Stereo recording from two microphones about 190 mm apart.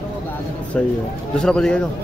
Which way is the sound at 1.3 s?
5° left (ahead or behind).